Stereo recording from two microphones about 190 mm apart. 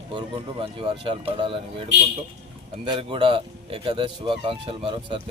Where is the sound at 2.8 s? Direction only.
25° right (ahead or behind).